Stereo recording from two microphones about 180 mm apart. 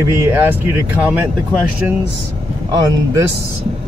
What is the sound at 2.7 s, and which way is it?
Speech, 15° right (ahead or behind).